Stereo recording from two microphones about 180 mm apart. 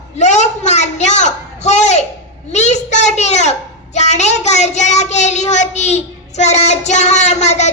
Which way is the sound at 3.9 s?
40° left (ahead or behind).